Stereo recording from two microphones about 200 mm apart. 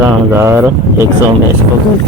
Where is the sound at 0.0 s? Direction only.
10° right (ahead or behind).